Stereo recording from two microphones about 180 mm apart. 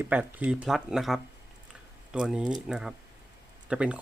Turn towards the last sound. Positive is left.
turn(degrees=-5)  # may be behind; listen again after turning